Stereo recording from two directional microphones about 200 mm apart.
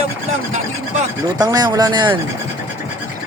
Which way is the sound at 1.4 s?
20° right (ahead or behind).